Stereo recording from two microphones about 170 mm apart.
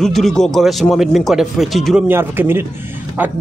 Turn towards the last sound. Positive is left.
turn(degrees=-10)  # may be behind; listen again after turning